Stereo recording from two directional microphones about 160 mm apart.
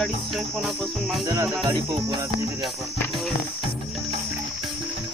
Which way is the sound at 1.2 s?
20° right (ahead or behind).